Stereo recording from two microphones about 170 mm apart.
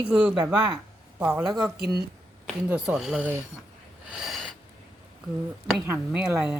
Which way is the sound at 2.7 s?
5° right (ahead or behind).